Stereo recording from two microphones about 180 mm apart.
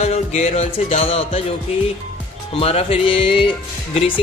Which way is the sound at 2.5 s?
35° left (ahead or behind).